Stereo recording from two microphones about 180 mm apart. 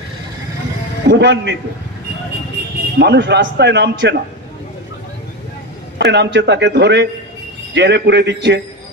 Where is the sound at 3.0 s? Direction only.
75° right (ahead or behind).